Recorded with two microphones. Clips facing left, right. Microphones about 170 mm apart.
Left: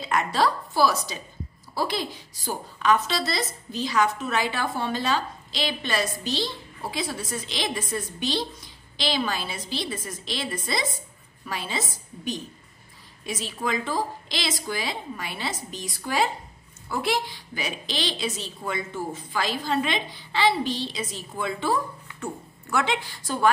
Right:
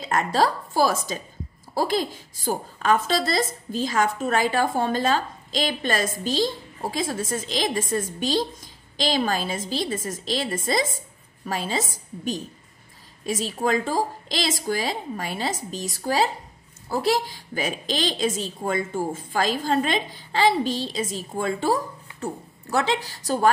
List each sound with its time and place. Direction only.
0.0 s a woman's voice: 45° right (ahead or behind)